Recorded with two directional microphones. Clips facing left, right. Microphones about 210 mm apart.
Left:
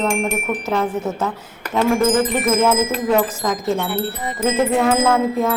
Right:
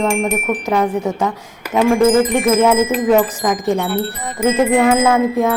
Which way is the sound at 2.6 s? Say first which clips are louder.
Right 4 dB; 15° right (ahead or behind).